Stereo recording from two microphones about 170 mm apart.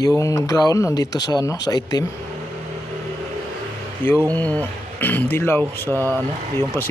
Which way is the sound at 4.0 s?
10° left (ahead or behind).